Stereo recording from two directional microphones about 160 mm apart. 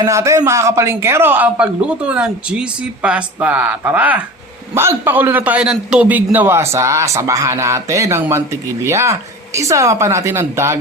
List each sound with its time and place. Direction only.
0.0 s a man's voice: 20° right (ahead or behind)